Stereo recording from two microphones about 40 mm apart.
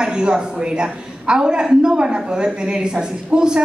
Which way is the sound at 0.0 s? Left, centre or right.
Right.